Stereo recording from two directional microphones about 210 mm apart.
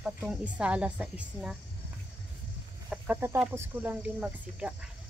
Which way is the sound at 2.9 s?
10° right (ahead or behind).